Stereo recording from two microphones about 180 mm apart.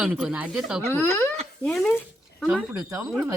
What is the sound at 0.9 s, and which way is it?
Speech, 10° left (ahead or behind).